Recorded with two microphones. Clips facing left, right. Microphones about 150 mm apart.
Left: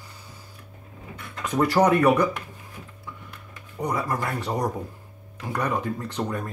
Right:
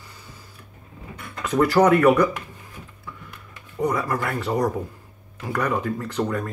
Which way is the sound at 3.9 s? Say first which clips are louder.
Right 2 dB; 25° left (ahead or behind).